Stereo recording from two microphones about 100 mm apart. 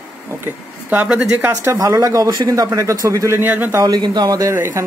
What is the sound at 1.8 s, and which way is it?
A man's voice, 35° right (ahead or behind).